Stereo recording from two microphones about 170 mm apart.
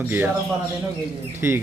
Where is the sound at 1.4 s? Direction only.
15° right (ahead or behind).